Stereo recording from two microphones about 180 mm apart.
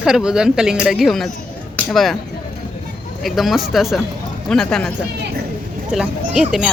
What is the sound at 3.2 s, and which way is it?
Speech, centre (ahead or behind).